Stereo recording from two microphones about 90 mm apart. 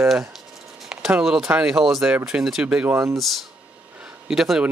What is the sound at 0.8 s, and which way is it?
Speech, 5° right (ahead or behind).